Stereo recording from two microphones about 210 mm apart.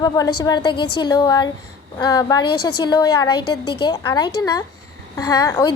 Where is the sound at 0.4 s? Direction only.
20° left (ahead or behind).